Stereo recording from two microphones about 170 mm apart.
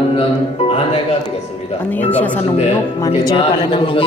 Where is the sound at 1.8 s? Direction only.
10° left (ahead or behind).